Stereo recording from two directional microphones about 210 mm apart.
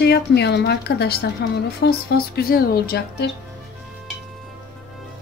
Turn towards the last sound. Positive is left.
turn(degrees=50)  # may be behind; listen again after turning